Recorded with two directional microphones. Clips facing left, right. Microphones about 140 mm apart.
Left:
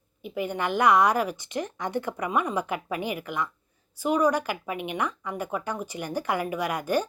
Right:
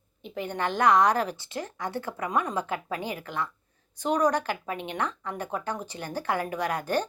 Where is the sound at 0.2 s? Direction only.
10° left (ahead or behind).